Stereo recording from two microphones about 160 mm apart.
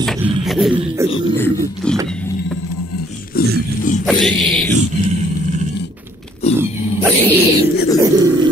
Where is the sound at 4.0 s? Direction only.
Centre (ahead or behind).